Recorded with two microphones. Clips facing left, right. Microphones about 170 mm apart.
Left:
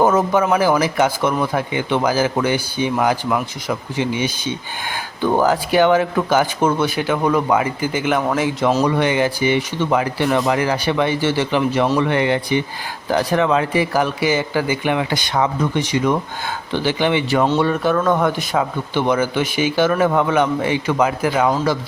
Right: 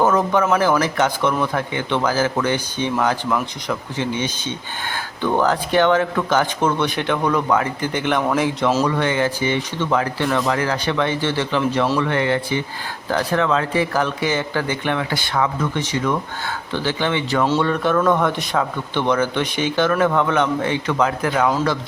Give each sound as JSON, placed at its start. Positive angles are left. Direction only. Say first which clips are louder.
{"t": 0.0, "sound": "speech", "louder": "left 2 dB", "side_deg": 10}
{"t": 8.8, "sound": "speech", "louder": "left 2 dB", "side_deg": 15}